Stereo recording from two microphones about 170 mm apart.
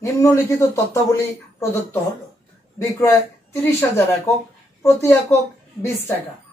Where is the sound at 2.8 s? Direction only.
20° left (ahead or behind).